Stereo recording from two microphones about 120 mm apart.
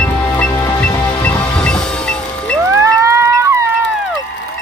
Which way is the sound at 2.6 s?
25° right (ahead or behind).